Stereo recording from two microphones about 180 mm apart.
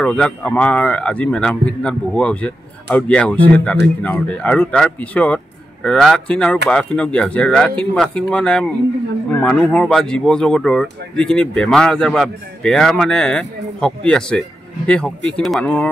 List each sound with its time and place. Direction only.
0.0 s speech: 5° left (ahead or behind)